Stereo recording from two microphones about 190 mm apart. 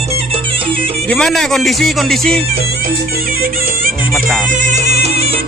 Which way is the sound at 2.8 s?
50° right (ahead or behind).